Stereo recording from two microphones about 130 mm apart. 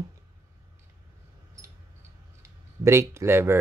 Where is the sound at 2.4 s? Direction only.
20° right (ahead or behind).